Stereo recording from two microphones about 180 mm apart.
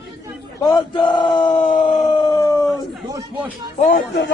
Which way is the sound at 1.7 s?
25° left (ahead or behind).